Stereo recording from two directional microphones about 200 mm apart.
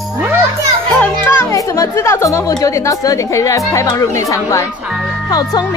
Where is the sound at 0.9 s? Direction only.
10° left (ahead or behind).